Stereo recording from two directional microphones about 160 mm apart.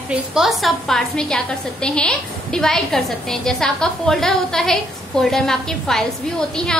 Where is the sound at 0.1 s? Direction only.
5° right (ahead or behind).